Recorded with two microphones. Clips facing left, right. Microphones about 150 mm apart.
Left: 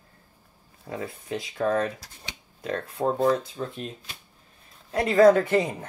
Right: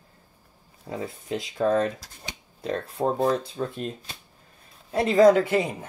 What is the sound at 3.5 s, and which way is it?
Speech, 40° right (ahead or behind).